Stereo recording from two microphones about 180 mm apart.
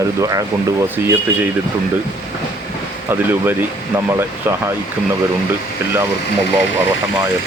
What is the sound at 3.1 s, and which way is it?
Speech, 10° right (ahead or behind).